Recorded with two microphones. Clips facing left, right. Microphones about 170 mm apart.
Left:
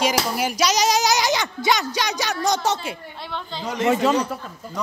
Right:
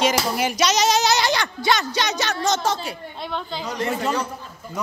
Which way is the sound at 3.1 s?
20° right (ahead or behind).